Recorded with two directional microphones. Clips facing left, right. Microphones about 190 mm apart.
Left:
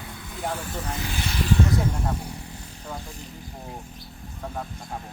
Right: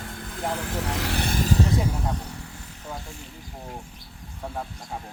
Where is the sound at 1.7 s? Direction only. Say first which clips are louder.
Even; 10° right (ahead or behind).